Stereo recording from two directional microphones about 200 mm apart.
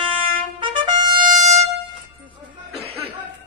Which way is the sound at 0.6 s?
25° right (ahead or behind).